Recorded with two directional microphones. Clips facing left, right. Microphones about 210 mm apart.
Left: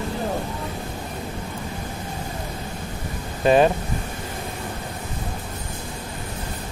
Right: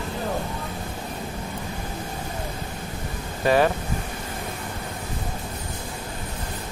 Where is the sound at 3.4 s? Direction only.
20° left (ahead or behind).